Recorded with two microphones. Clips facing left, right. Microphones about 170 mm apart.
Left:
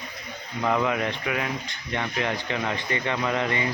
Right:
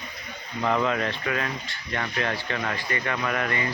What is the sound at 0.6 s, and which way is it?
Speech, 10° left (ahead or behind).